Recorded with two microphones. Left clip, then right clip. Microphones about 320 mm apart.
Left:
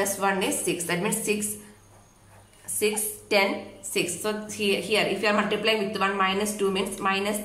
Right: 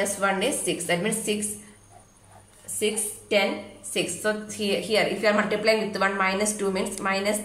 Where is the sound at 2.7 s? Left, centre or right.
Centre.